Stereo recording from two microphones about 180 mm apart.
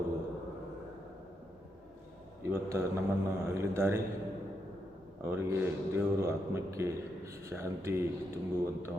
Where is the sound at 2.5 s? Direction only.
15° right (ahead or behind).